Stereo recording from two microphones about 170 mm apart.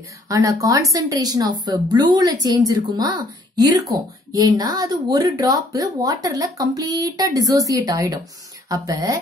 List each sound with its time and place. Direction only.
0.3 s speech: 20° right (ahead or behind)